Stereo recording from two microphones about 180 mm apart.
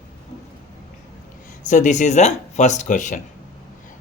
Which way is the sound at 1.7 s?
45° left (ahead or behind).